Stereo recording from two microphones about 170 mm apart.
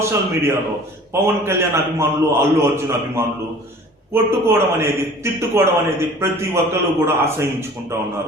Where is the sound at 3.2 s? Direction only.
15° right (ahead or behind).